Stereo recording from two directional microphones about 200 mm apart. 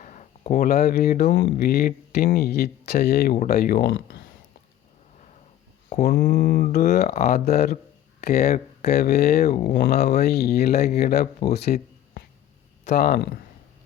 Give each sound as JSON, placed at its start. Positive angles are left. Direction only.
{"t": 0.0, "sound": "a sound", "side_deg": 40}
{"t": 0.7, "sound": "speech", "side_deg": 50}
{"t": 3.9, "sound": "speech", "side_deg": 65}
{"t": 6.1, "sound": "speech", "side_deg": 50}
{"t": 9.5, "sound": "speech", "side_deg": 40}
{"t": 11.5, "sound": "a sound", "side_deg": 55}
{"t": 13.1, "sound": "speech", "side_deg": 50}